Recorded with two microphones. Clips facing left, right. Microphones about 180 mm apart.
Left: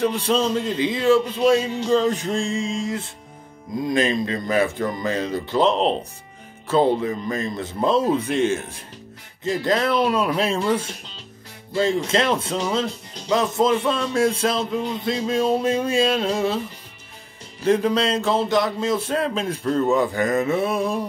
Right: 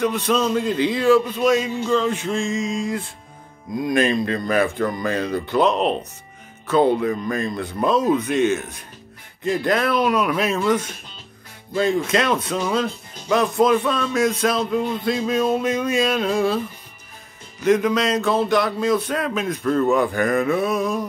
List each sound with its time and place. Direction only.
0.0 s speech: 30° left (ahead or behind)
17.6 s speech: 30° left (ahead or behind)